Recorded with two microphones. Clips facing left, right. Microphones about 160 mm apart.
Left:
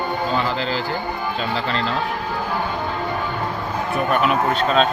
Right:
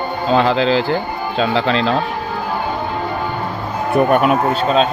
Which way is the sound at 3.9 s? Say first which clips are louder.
Right 7 dB; 50° right (ahead or behind).